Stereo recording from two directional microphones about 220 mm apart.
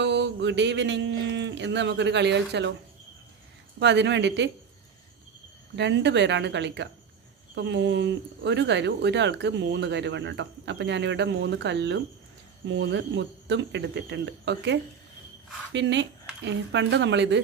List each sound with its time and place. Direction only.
0.0 s speech: 55° right (ahead or behind)
3.8 s speech: 50° right (ahead or behind)
5.7 s speech: 55° right (ahead or behind)